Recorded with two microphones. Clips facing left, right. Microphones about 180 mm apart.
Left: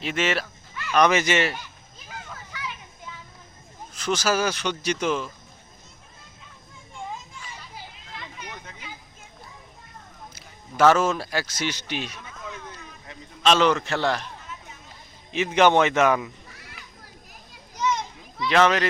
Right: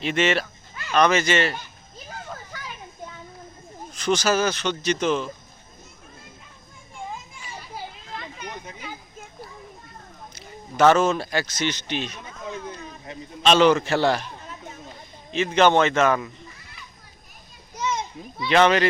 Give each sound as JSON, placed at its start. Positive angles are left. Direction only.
{"t": 0.0, "sound": "a man's voice", "side_deg": 5}
{"t": 0.9, "sound": "speech", "side_deg": 15}
{"t": 2.0, "sound": "children playing", "side_deg": -40}
{"t": 3.9, "sound": "speech", "side_deg": 5}
{"t": 8.2, "sound": "a sound", "side_deg": -40}
{"t": 10.3, "sound": "speech", "side_deg": 5}
{"t": 12.2, "sound": "a sound", "side_deg": -30}
{"t": 13.4, "sound": "a man's voice", "side_deg": 0}
{"t": 15.3, "sound": "speech", "side_deg": 15}
{"t": 18.4, "sound": "a man's voice", "side_deg": 0}